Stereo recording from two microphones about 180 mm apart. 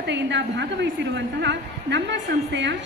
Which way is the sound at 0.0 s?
75° right (ahead or behind).